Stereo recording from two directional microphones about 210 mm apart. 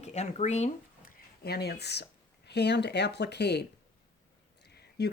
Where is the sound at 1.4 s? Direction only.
50° left (ahead or behind).